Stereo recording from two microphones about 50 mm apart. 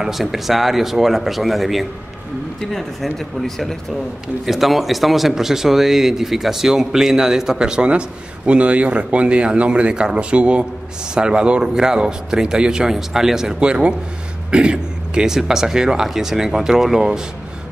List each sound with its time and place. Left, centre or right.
0.0 s speech: centre
3.2 s speech: centre
14.5 s throat clearing: right
15.2 s speech: centre